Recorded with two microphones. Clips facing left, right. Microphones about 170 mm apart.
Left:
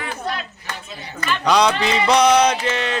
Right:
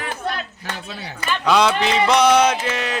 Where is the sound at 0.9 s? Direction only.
85° right.